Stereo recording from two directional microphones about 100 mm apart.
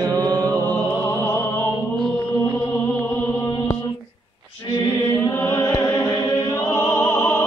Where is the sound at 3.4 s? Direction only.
35° left (ahead or behind).